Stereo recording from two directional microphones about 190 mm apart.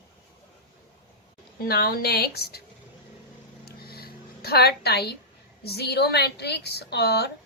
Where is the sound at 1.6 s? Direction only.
55° left (ahead or behind).